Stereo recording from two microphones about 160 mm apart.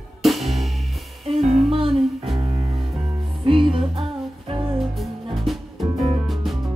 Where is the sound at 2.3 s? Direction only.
35° right (ahead or behind).